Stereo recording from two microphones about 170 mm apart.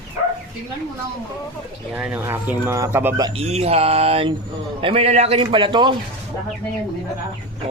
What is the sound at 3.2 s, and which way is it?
A man's voice, 35° right (ahead or behind).